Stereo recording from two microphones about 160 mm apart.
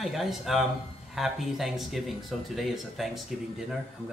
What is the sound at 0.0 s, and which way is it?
Speech, centre (ahead or behind).